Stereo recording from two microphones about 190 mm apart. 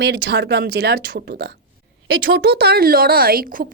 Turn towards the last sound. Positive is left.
turn(degrees=-50)  # may be behind; listen again after turning